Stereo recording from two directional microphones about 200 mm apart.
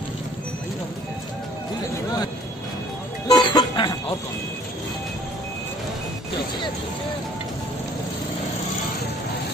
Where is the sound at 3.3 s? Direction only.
20° left (ahead or behind).